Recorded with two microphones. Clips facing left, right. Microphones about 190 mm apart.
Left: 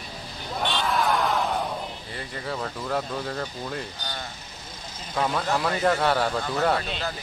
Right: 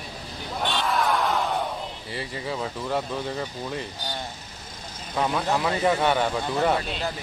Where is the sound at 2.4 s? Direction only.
5° right (ahead or behind).